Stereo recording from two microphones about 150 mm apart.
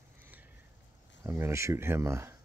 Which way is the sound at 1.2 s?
15° right (ahead or behind).